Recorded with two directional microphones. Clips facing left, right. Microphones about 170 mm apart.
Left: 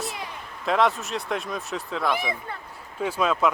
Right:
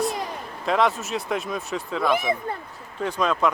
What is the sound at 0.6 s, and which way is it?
Speech, centre (ahead or behind).